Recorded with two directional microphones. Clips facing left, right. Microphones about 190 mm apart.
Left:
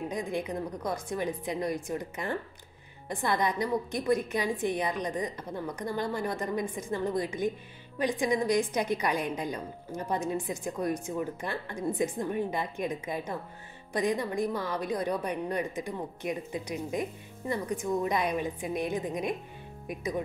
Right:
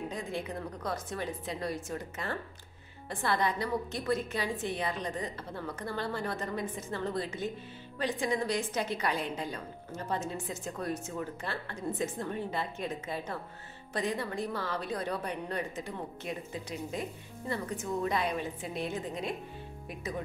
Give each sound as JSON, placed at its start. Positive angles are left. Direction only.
{"t": 0.1, "sound": "a woman's voice", "side_deg": 15}